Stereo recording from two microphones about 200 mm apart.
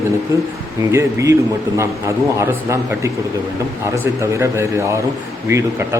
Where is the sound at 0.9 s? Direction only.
15° right (ahead or behind).